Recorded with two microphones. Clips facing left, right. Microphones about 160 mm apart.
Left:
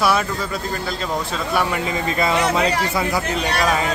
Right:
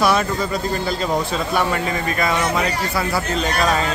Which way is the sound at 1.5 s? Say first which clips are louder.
Even; 15° left (ahead or behind).